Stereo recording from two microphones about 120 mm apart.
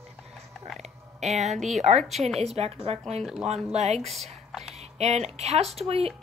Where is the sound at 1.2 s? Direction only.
70° right (ahead or behind).